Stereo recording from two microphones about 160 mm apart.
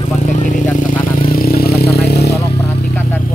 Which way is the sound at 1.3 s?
70° left (ahead or behind).